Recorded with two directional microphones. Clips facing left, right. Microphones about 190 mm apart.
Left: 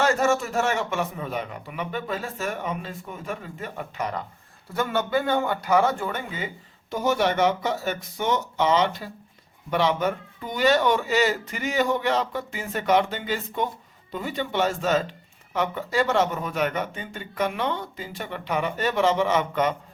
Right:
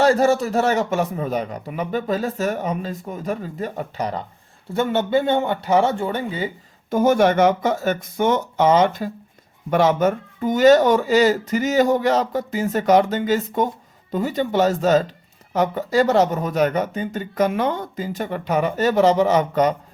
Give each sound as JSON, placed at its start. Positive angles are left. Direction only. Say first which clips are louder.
{"t": 0.0, "sound": "a man's voice", "louder": "right 6 dB", "side_deg": -35}
{"t": 6.9, "sound": "a man's voice", "louder": "right 7 dB", "side_deg": -50}